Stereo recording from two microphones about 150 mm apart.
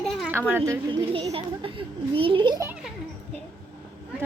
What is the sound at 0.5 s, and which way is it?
Speech, 20° right (ahead or behind).